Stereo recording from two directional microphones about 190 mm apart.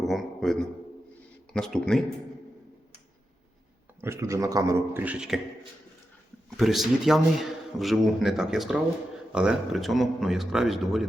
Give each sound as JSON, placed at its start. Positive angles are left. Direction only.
{"t": 0.0, "sound": "a man's voice", "side_deg": 0}
{"t": 4.0, "sound": "a man's voice", "side_deg": -15}
{"t": 6.6, "sound": "speech", "side_deg": 0}